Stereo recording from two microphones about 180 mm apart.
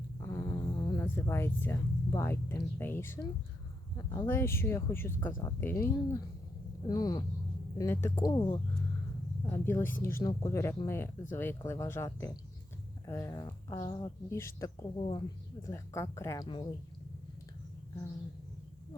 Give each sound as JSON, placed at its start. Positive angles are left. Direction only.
{"t": 0.2, "sound": "a sound", "side_deg": 15}
{"t": 1.0, "sound": "speech", "side_deg": 15}
{"t": 4.3, "sound": "speech", "side_deg": 15}
{"t": 8.4, "sound": "speech", "side_deg": 30}
{"t": 9.5, "sound": "speech", "side_deg": 15}
{"t": 14.3, "sound": "speech", "side_deg": 15}
{"t": 14.9, "sound": "speech", "side_deg": 30}
{"t": 15.6, "sound": "speech", "side_deg": 15}